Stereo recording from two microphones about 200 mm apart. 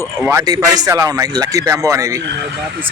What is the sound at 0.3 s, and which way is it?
Speech, 15° right (ahead or behind).